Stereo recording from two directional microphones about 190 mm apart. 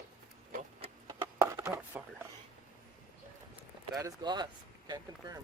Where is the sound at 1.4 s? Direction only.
15° right (ahead or behind).